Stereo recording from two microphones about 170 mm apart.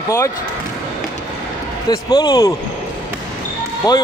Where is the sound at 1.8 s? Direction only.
25° left (ahead or behind).